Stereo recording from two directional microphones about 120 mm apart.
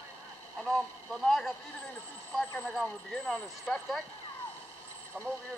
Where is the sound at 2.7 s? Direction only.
Centre (ahead or behind).